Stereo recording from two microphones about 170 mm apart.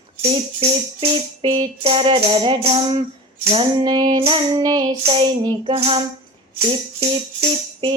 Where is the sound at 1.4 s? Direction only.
30° right (ahead or behind).